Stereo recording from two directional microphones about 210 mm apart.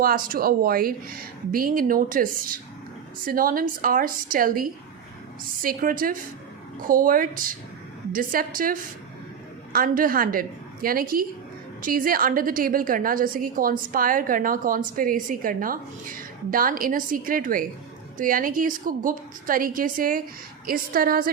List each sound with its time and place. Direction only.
0.0 s a woman's voice: 45° right (ahead or behind)